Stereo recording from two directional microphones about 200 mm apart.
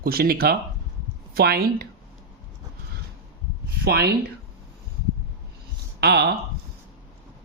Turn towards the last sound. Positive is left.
turn(degrees=-55)  # may be behind; listen again after turning